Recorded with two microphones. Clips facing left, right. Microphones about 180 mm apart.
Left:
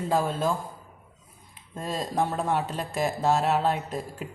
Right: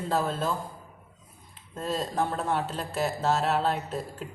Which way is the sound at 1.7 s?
10° left (ahead or behind).